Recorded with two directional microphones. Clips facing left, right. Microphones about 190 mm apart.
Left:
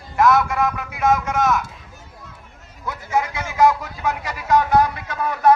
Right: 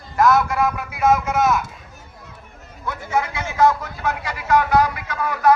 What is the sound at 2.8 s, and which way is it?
Speech, 15° left (ahead or behind).